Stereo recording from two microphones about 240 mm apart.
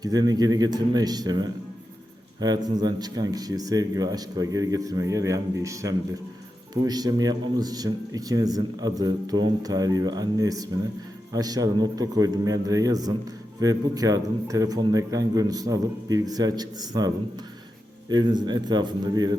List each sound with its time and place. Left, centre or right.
0.0 s a man's voice: centre